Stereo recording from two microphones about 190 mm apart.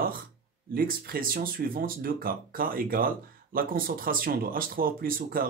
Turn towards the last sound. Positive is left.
turn(degrees=-50)  # may be behind; listen again after turning